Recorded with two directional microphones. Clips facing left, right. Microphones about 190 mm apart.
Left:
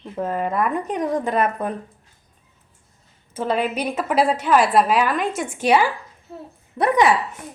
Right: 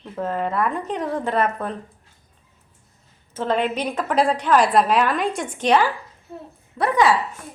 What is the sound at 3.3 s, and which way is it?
A woman's voice, 10° left (ahead or behind).